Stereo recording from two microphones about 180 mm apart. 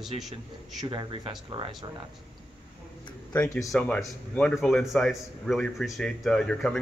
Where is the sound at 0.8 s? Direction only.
25° right (ahead or behind).